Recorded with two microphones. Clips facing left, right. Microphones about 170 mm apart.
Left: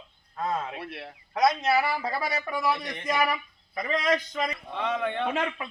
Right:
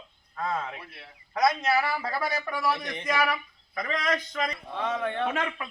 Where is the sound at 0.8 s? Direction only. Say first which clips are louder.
Left 10 dB; 70° left (ahead or behind).